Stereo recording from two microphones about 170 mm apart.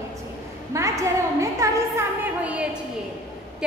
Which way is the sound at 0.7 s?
20° right (ahead or behind).